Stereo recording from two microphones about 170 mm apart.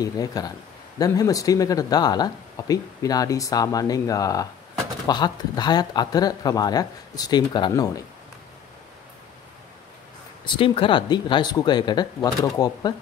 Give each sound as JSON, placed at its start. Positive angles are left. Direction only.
{"t": 0.0, "sound": "speech", "side_deg": 20}
{"t": 10.4, "sound": "speech", "side_deg": 30}